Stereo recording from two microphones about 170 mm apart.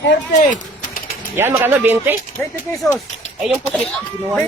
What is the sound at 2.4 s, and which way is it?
Speech, 10° left (ahead or behind).